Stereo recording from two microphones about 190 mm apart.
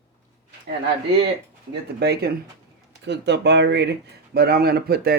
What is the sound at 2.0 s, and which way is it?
Speech, 55° right (ahead or behind).